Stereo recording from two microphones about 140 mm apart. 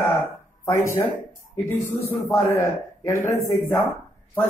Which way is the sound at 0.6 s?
20° left (ahead or behind).